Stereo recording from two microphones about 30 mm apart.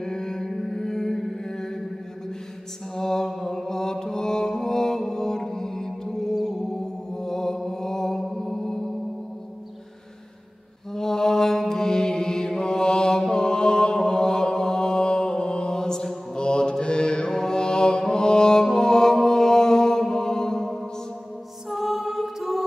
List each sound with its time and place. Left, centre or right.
0.0 s music: left
0.5 s music: centre
0.7 s music: centre
2.9 s mantra: centre
8.4 s singing bowl: centre
10.9 s mantra: centre
16.3 s mantra: left
18.0 s music: left
21.6 s music: centre